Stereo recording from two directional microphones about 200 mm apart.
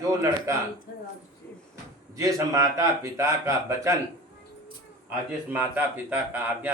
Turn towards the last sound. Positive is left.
turn(degrees=-10)  # may be behind; listen again after turning